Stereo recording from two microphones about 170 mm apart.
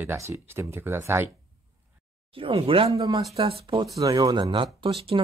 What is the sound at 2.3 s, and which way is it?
Speech, 35° right (ahead or behind).